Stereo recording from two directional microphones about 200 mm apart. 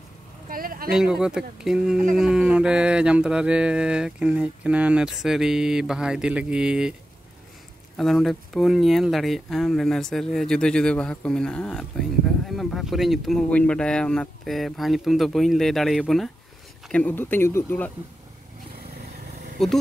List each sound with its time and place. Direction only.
0.5 s a sound: 45° right (ahead or behind)
0.8 s speech: 5° right (ahead or behind)
8.0 s speech: centre (ahead or behind)
19.6 s speech: centre (ahead or behind)